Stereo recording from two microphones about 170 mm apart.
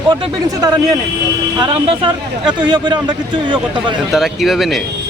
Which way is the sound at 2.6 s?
25° right (ahead or behind).